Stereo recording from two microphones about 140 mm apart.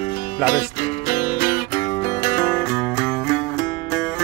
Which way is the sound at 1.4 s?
90° left.